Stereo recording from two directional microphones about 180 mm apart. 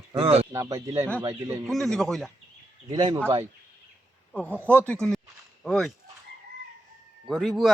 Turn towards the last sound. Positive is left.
turn(degrees=0)  # may be behind; listen again after turning